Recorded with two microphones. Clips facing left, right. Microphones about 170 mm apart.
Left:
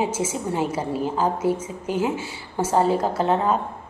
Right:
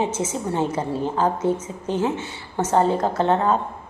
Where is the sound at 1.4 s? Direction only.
10° left (ahead or behind).